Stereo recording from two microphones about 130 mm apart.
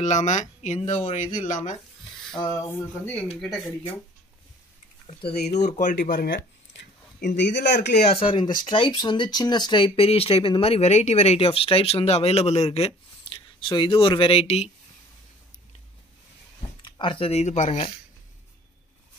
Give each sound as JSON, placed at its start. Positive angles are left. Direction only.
{"t": 0.0, "sound": "speech", "side_deg": 65}
{"t": 2.7, "sound": "speech", "side_deg": 15}
{"t": 5.0, "sound": "speech", "side_deg": 55}
{"t": 7.6, "sound": "speech", "side_deg": 65}
{"t": 16.8, "sound": "speech", "side_deg": 40}